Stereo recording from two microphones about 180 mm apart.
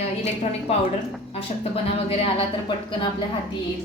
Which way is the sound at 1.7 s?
30° left (ahead or behind).